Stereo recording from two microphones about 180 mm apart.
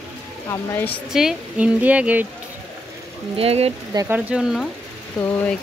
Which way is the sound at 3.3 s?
35° right (ahead or behind).